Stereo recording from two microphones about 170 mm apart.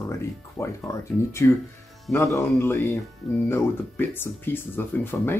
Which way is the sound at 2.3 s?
15° left (ahead or behind).